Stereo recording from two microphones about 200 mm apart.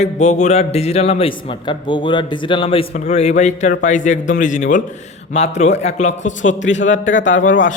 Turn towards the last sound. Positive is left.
turn(degrees=40)  # may be behind; listen again after turning